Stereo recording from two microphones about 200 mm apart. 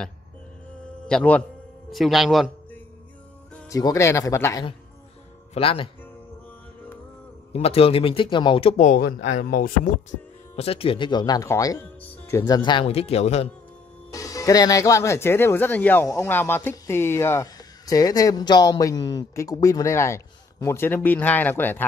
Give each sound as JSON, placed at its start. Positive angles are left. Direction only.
{"t": 1.0, "sound": "a man's voice", "side_deg": 5}
{"t": 3.7, "sound": "speech", "side_deg": 15}
{"t": 5.5, "sound": "speech", "side_deg": 25}
{"t": 7.5, "sound": "speech", "side_deg": 30}
{"t": 10.5, "sound": "speech", "side_deg": 30}
{"t": 14.1, "sound": "speech", "side_deg": 15}